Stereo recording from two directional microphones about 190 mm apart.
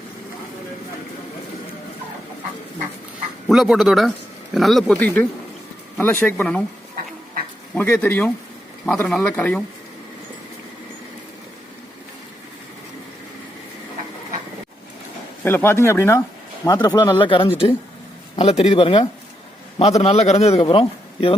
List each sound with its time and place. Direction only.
3.5 s speech: centre (ahead or behind)
7.7 s speech: 10° left (ahead or behind)
15.4 s a man's voice: 10° left (ahead or behind); by 21.3 s 30° left (ahead or behind)